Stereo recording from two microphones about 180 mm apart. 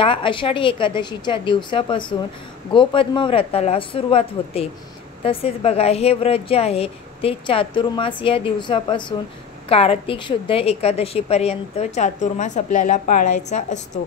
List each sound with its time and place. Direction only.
0.0 s a woman's voice: 30° left (ahead or behind)